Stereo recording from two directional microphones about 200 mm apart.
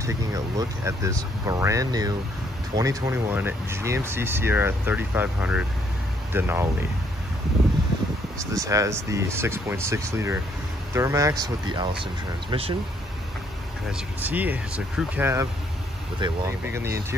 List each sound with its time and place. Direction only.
0.0 s speech: 15° right (ahead or behind)
8.5 s speech: 15° right (ahead or behind)
13.9 s speech: 10° right (ahead or behind)
16.2 s speech: 20° right (ahead or behind)